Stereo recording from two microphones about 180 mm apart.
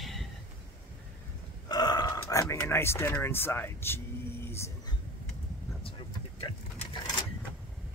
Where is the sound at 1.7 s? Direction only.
20° left (ahead or behind).